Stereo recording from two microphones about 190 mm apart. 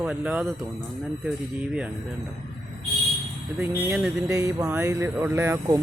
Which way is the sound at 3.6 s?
5° right (ahead or behind).